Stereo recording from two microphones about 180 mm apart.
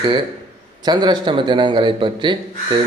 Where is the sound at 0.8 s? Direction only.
25° right (ahead or behind).